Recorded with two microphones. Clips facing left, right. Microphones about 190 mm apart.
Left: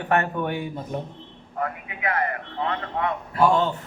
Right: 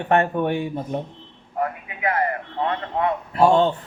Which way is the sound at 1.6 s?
30° right (ahead or behind).